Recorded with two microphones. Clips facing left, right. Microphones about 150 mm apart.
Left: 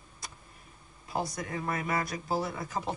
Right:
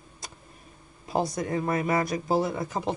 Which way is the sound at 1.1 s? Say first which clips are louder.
Right 7 dB; 25° right (ahead or behind).